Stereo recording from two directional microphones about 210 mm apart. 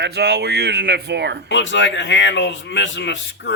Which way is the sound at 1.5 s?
60° left (ahead or behind).